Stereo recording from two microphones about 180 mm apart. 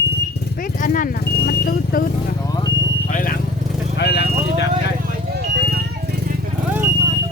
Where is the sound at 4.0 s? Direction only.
70° left (ahead or behind).